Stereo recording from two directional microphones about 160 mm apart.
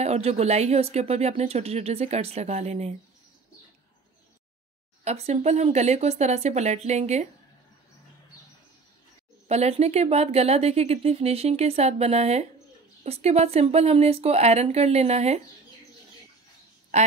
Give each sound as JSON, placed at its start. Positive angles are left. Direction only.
{"t": 0.0, "sound": "speech", "side_deg": -40}
{"t": 5.0, "sound": "speech", "side_deg": -45}
{"t": 9.5, "sound": "speech", "side_deg": -40}
{"t": 16.9, "sound": "speech", "side_deg": -45}